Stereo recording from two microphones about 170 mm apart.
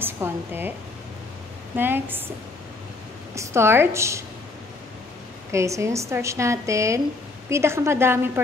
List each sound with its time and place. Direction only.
0.0 s speech: 10° right (ahead or behind)
1.8 s speech: 10° right (ahead or behind)
3.3 s speech: 15° right (ahead or behind)
5.5 s speech: 15° right (ahead or behind)